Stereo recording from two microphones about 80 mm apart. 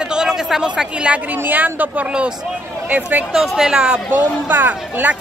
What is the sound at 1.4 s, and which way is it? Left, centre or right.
Speech, right.